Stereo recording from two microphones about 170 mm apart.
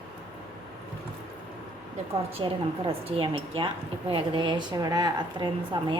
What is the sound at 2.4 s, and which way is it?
A woman's voice, 30° right (ahead or behind).